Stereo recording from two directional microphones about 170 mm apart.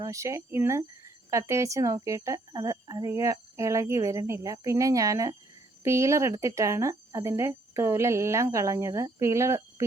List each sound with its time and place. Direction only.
0.0 s speech: 20° right (ahead or behind)